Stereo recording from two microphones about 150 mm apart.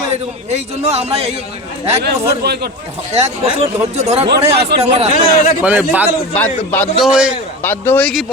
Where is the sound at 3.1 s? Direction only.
45° right (ahead or behind).